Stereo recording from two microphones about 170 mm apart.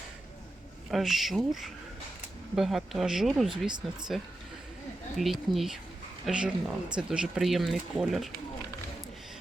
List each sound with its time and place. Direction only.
0.9 s speech: centre (ahead or behind)
3.7 s speech: 25° right (ahead or behind)
5.1 s speech: centre (ahead or behind)